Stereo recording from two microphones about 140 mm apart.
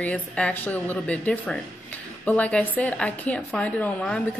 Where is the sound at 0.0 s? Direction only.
10° left (ahead or behind).